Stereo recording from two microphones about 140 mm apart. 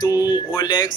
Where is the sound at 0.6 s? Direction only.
30° left (ahead or behind).